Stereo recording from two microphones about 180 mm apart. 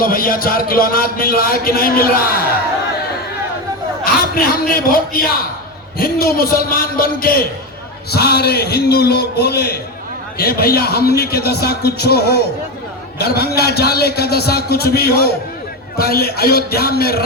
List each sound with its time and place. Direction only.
0.0 s speech: 55° left (ahead or behind)
4.0 s a sound: 55° left (ahead or behind)
4.7 s a man's voice: 55° left (ahead or behind)